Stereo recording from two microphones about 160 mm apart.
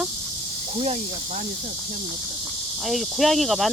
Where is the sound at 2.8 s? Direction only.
Centre (ahead or behind).